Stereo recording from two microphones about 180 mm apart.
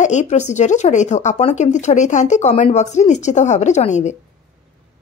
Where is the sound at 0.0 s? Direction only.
40° left (ahead or behind).